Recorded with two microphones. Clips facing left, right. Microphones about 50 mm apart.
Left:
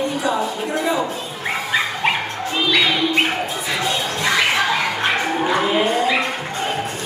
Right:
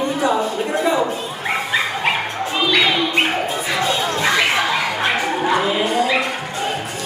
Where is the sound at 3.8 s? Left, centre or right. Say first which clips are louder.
Right 3 dB; centre.